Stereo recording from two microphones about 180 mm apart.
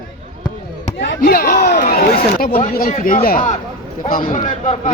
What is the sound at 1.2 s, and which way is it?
A man's voice, 55° left (ahead or behind).